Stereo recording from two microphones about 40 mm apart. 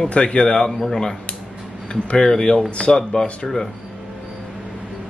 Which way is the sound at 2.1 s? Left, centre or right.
Centre.